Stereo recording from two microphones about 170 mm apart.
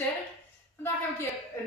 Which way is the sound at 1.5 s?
15° left (ahead or behind).